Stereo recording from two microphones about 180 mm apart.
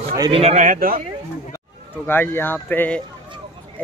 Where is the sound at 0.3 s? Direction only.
35° right (ahead or behind).